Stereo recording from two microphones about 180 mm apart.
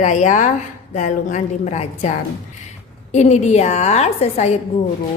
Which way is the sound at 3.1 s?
40° left (ahead or behind).